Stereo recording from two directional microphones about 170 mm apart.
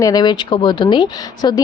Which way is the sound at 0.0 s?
25° left (ahead or behind).